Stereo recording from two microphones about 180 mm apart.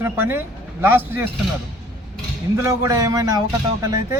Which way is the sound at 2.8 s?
20° right (ahead or behind).